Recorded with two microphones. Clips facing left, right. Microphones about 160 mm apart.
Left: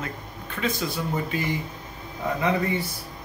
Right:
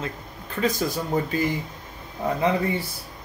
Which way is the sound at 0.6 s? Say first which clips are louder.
Right 3 dB; 40° right (ahead or behind).